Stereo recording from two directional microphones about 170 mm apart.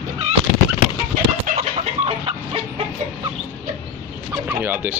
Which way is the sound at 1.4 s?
40° right (ahead or behind).